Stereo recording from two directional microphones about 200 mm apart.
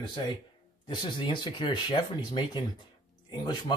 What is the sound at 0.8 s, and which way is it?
Speech, 25° left (ahead or behind).